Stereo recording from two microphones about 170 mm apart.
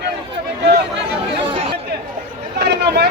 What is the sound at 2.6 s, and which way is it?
Vehicle, 70° right (ahead or behind).